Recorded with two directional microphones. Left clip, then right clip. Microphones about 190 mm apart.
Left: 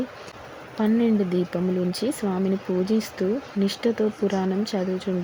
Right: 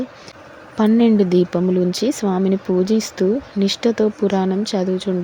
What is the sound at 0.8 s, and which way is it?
Speech, 25° right (ahead or behind).